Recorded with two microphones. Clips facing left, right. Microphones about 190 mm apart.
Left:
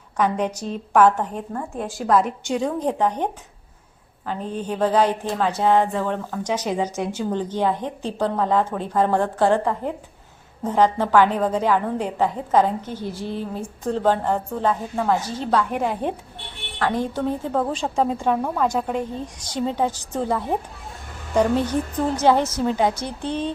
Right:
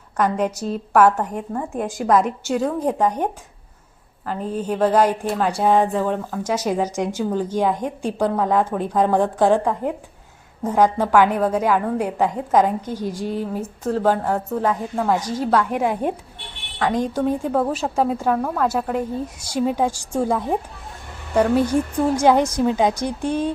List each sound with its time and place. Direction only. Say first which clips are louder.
0.2 s a woman's voice: right 1 dB; 10° right (ahead or behind)
2.1 s a woman's voice: right 1 dB; centre (ahead or behind)
4.3 s a woman's voice: right 3 dB; 5° right (ahead or behind)